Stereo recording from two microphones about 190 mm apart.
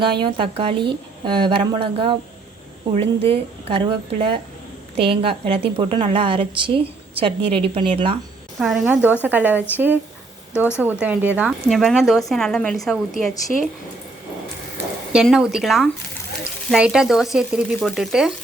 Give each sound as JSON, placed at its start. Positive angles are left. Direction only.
{"t": 0.0, "sound": "a woman's voice", "side_deg": -25}
{"t": 8.5, "sound": "a woman's voice", "side_deg": 0}
{"t": 15.1, "sound": "speech", "side_deg": 0}